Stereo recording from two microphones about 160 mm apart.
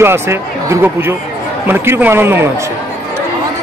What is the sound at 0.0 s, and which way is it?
Speech, 15° right (ahead or behind).